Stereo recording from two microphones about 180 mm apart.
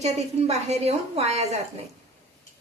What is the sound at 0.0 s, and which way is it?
A woman's voice, 35° right (ahead or behind).